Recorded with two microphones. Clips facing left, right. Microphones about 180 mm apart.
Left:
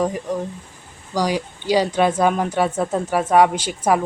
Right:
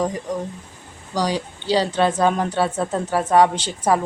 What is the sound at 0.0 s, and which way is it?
A woman's voice, 10° left (ahead or behind).